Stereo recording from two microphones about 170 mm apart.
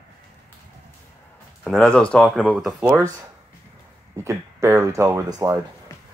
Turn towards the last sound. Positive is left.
turn(degrees=-20)  # may be behind; listen again after turning